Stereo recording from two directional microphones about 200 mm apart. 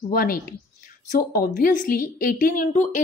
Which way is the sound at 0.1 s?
45° left (ahead or behind).